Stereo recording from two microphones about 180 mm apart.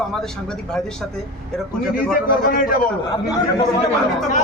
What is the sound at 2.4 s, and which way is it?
Speech, 55° left (ahead or behind).